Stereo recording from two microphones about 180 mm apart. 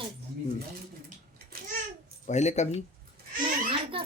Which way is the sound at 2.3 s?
40° left (ahead or behind).